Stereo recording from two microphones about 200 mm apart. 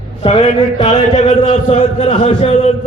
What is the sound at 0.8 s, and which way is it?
A man's voice, 35° left (ahead or behind).